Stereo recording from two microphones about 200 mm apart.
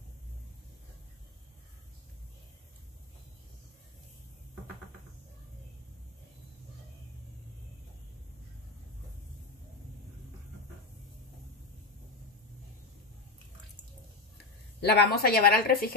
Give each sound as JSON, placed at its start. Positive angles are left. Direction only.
{"t": 14.8, "sound": "a woman's voice", "side_deg": 50}